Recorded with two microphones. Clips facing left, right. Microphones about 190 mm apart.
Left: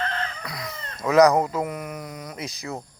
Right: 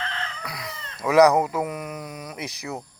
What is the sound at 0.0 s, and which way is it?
Chicken, 45° left (ahead or behind).